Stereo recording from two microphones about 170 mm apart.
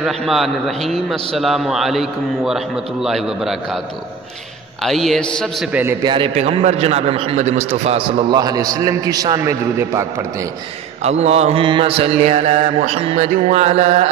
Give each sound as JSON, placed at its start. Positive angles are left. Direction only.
{"t": 0.0, "sound": "a man's voice", "side_deg": 0}
{"t": 4.8, "sound": "a man's voice", "side_deg": 0}
{"t": 5.7, "sound": "a man's voice", "side_deg": -10}
{"t": 6.0, "sound": "mantra", "side_deg": -30}
{"t": 8.3, "sound": "a man's voice", "side_deg": -20}
{"t": 11.0, "sound": "mantra", "side_deg": -40}